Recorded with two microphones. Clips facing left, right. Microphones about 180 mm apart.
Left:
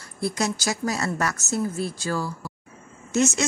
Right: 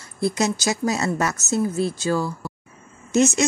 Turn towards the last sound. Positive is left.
turn(degrees=-15)  # may be behind; listen again after turning